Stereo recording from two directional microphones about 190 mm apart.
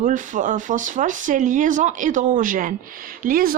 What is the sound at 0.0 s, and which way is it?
A woman's voice, 45° right (ahead or behind).